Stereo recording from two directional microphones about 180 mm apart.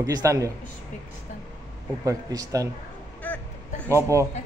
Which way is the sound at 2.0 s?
20° right (ahead or behind).